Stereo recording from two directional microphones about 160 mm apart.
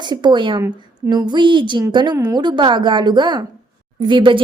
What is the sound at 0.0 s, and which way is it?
Speech, 25° right (ahead or behind).